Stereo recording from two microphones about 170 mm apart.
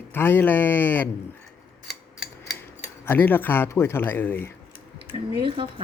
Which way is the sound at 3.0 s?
10° left (ahead or behind).